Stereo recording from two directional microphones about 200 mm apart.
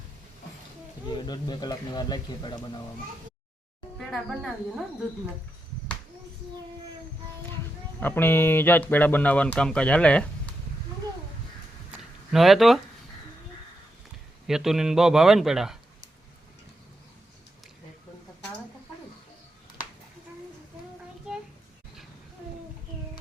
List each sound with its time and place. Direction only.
1.3 s speech: 20° left (ahead or behind)
3.9 s speech: centre (ahead or behind)
8.0 s speech: 10° left (ahead or behind)
12.3 s a man's voice: centre (ahead or behind)
14.4 s a man's voice: centre (ahead or behind)